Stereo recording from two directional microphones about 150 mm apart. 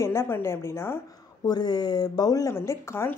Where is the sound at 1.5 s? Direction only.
30° left (ahead or behind).